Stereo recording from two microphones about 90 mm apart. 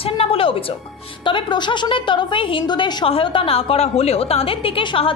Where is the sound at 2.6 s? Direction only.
60° left (ahead or behind).